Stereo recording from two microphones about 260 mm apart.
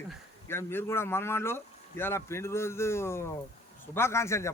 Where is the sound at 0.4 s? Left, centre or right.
Centre.